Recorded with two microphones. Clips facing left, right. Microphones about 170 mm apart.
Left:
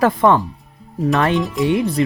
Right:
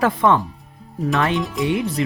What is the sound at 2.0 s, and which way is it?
Speech, 40° left (ahead or behind).